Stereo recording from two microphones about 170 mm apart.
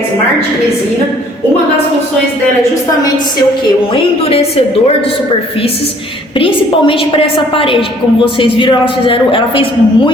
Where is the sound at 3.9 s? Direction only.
35° left (ahead or behind).